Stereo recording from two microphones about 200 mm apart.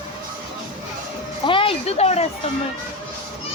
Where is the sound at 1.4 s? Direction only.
25° left (ahead or behind).